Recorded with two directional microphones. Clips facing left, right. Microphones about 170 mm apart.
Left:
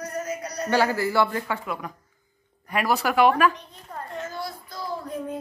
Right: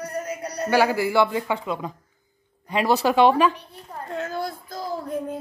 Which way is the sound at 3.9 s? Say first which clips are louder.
Even; 5° right (ahead or behind).